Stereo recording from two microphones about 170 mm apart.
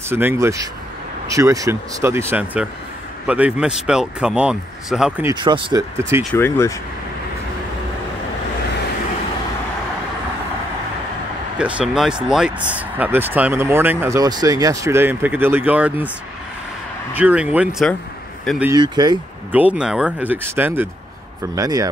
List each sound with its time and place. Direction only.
0.1 s speech: 15° right (ahead or behind)
5.3 s speech: 25° right (ahead or behind)
6.3 s speech: 15° left (ahead or behind)
11.5 s speech: 5° right (ahead or behind)
17.1 s speech: 10° right (ahead or behind)
18.8 s speech: 25° right (ahead or behind)
19.5 s speech: 10° right (ahead or behind)
21.5 s speech: 20° right (ahead or behind)